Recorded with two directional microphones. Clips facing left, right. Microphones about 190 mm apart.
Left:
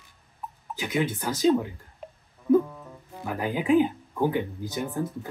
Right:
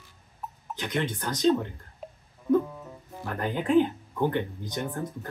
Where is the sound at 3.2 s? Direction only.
5° left (ahead or behind).